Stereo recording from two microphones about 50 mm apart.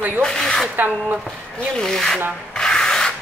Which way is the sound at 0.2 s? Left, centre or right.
Centre.